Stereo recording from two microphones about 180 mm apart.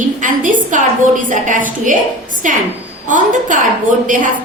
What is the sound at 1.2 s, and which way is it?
A woman's voice, 45° right (ahead or behind).